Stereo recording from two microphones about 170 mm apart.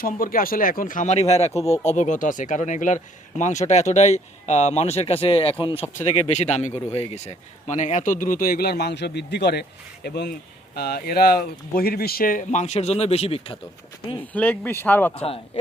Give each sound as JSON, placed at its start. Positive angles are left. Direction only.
{"t": 0.0, "sound": "a man's voice", "side_deg": 55}
{"t": 1.5, "sound": "speech", "side_deg": 20}
{"t": 1.8, "sound": "a man's voice", "side_deg": 45}
{"t": 14.2, "sound": "speech", "side_deg": 10}
{"t": 15.1, "sound": "speech", "side_deg": 35}